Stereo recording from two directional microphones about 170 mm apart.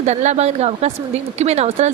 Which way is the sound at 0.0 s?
40° right (ahead or behind).